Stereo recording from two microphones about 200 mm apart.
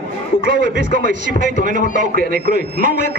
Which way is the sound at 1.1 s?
60° left (ahead or behind).